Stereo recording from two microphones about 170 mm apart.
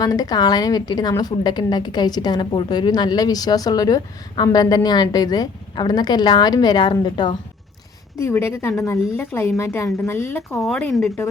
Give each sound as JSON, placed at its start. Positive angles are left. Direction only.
{"t": 0.0, "sound": "a woman's voice", "side_deg": 20}
{"t": 8.2, "sound": "a woman's voice", "side_deg": 15}
{"t": 10.6, "sound": "speech", "side_deg": 0}